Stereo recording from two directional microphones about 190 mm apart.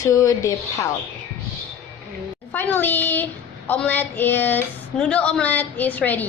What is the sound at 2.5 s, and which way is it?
A woman's voice, 10° left (ahead or behind).